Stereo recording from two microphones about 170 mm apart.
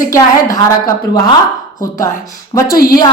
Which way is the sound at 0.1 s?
20° left (ahead or behind).